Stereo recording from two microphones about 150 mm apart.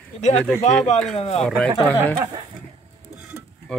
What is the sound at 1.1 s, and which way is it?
Speech, 40° left (ahead or behind).